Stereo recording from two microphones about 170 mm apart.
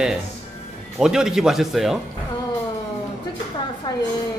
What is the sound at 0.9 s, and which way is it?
Speech, 5° right (ahead or behind).